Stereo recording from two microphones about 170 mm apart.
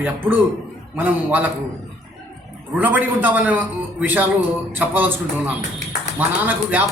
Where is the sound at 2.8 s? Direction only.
10° right (ahead or behind).